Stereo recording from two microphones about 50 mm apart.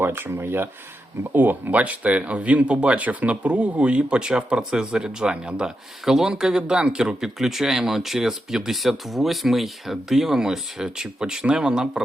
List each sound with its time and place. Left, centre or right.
0.0 s speech: right
0.3 s speech: right
1.3 s speech: right; by 12.0 s centre